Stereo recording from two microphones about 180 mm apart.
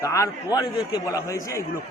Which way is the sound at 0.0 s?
20° left (ahead or behind).